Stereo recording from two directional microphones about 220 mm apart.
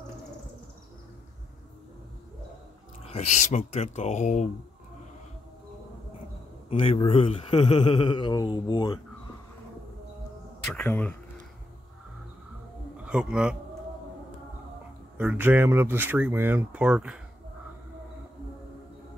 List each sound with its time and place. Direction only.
3.0 s speech: 30° left (ahead or behind)
6.7 s a man's voice: 25° left (ahead or behind)
10.7 s a sound: 5° left (ahead or behind)
13.0 s a man's voice: 5° right (ahead or behind)
15.1 s speech: 10° right (ahead or behind)